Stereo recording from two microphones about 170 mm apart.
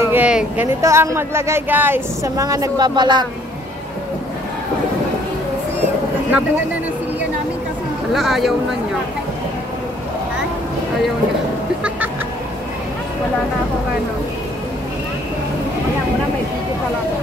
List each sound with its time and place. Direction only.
0.0 s a sound: 10° right (ahead or behind)
0.7 s a woman's voice: 15° right (ahead or behind)
8.1 s speech: centre (ahead or behind)